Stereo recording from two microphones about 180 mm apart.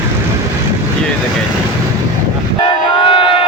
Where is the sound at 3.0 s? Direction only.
30° left (ahead or behind).